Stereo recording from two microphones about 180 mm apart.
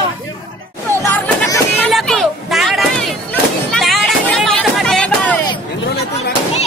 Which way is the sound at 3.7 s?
Centre (ahead or behind).